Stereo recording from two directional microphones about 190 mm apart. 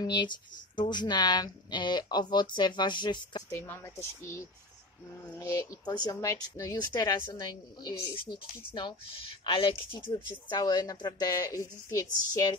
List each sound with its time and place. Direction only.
0.0 s a woman's voice: 25° left (ahead or behind)
3.6 s speech: 10° left (ahead or behind)
5.4 s a woman's voice: 15° left (ahead or behind)